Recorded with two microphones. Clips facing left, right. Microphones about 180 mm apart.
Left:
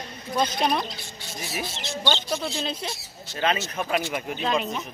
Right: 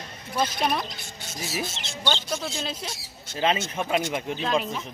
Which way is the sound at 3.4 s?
25° right (ahead or behind).